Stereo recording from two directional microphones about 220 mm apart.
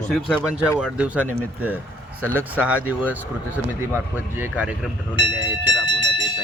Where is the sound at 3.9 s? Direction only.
10° right (ahead or behind).